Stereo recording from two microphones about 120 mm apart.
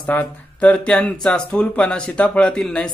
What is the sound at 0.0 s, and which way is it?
Speech, 10° left (ahead or behind).